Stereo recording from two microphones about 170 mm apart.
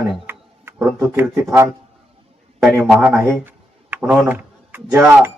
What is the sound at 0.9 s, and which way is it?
Speech, 15° right (ahead or behind).